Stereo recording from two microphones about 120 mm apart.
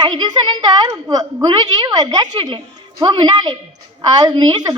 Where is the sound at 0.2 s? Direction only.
35° right (ahead or behind).